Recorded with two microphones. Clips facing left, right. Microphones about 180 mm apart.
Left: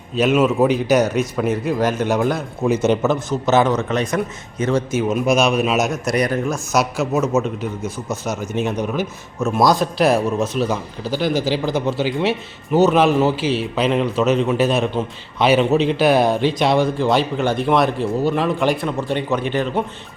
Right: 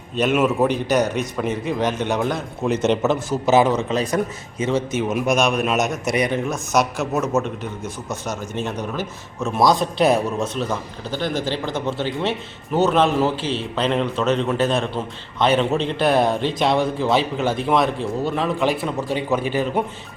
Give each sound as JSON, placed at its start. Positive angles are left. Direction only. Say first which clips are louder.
{"t": 0.2, "sound": "a man's voice", "louder": "left 3 dB", "side_deg": 0}
{"t": 3.8, "sound": "a man's voice", "louder": "left 1 dB", "side_deg": -30}
{"t": 4.7, "sound": "a man's voice", "louder": "left 2 dB", "side_deg": 0}